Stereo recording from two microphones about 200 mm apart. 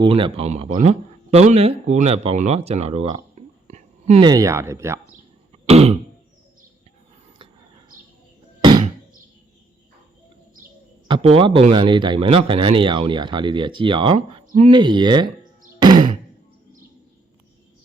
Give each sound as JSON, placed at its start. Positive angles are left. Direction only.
{"t": 0.0, "sound": "speech", "side_deg": -25}
{"t": 4.2, "sound": "speech", "side_deg": -20}
{"t": 5.6, "sound": "throat clearing", "side_deg": -30}
{"t": 11.1, "sound": "speech", "side_deg": -25}
{"t": 14.4, "sound": "a sound", "side_deg": -35}
{"t": 14.7, "sound": "speech", "side_deg": -25}
{"t": 15.8, "sound": "a sound", "side_deg": -20}